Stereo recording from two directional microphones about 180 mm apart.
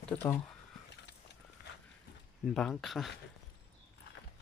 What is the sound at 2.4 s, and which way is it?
Speech, 5° left (ahead or behind).